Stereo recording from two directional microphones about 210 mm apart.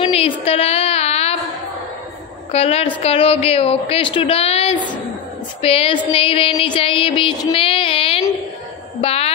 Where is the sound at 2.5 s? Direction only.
30° left (ahead or behind).